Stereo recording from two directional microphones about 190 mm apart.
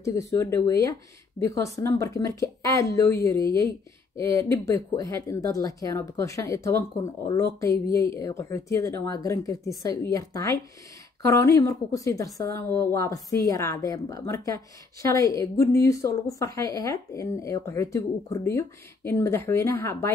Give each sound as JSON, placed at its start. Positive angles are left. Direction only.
{"t": 0.0, "sound": "a woman's voice", "side_deg": 15}